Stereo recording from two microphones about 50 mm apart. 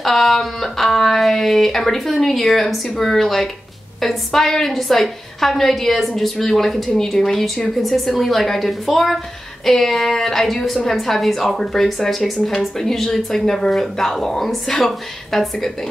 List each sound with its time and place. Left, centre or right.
0.0 s a woman's voice: centre